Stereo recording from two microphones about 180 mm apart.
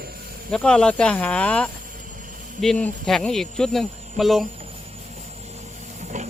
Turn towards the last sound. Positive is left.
turn(degrees=-40)  # may be behind; listen again after turning